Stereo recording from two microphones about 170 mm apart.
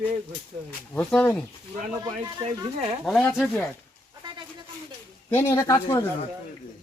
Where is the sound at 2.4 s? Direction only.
25° right (ahead or behind).